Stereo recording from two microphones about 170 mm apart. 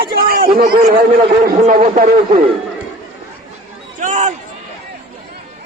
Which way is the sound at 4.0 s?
45° right (ahead or behind).